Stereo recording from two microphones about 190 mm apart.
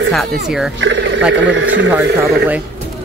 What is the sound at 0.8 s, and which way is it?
Speech, 75° right (ahead or behind).